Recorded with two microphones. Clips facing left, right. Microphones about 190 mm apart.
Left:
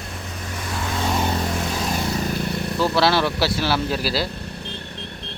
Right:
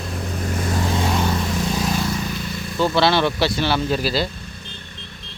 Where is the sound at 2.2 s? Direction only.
55° left (ahead or behind).